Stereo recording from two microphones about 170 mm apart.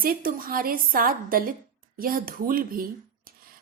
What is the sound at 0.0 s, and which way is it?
A woman's voice, 60° right (ahead or behind).